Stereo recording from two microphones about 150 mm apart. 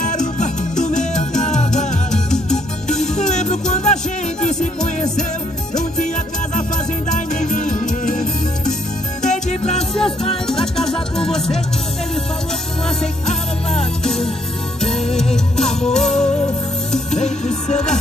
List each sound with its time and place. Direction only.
0.0 s music: 55° left (ahead or behind)
3.2 s music: 50° left (ahead or behind)
7.1 s music: 55° left (ahead or behind)
10.4 s music: 5° left (ahead or behind)
13.7 s music: 5° left (ahead or behind)
17.1 s music: 50° left (ahead or behind)